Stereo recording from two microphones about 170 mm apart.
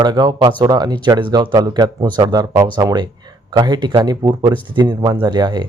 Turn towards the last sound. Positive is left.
turn(degrees=-25)  # may be behind; listen again after turning